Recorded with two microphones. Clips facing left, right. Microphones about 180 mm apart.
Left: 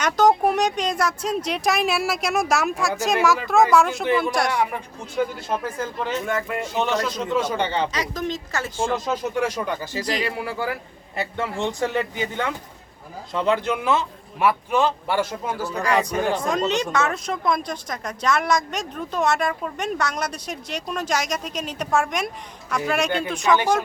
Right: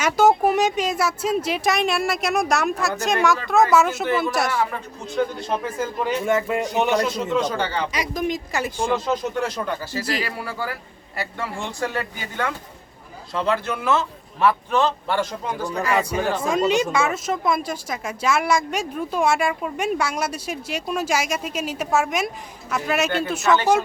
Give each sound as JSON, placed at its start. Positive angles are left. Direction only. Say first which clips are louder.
{"t": 0.0, "sound": "speech", "louder": "right 1 dB", "side_deg": -5}
{"t": 4.7, "sound": "speech", "louder": "right 1 dB", "side_deg": 5}
{"t": 7.3, "sound": "a man's voice", "louder": "right 1 dB", "side_deg": 5}
{"t": 7.5, "sound": "speech", "louder": "left 1 dB", "side_deg": 20}
{"t": 7.9, "sound": "speech", "louder": "right 2 dB", "side_deg": -10}
{"t": 9.3, "sound": "a man's voice", "louder": "left 1 dB", "side_deg": 10}
{"t": 10.0, "sound": "speech", "louder": "left 1 dB", "side_deg": -5}
{"t": 10.4, "sound": "a man's voice", "louder": "left 2 dB", "side_deg": 20}
{"t": 15.7, "sound": "speech", "louder": "even", "side_deg": -5}